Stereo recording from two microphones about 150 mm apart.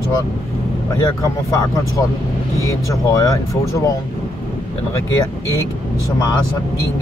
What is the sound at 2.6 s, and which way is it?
Speech, 20° left (ahead or behind).